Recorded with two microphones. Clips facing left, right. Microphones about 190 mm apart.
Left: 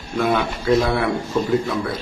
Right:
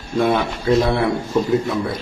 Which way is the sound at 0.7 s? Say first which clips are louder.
Right 2 dB; 25° right (ahead or behind).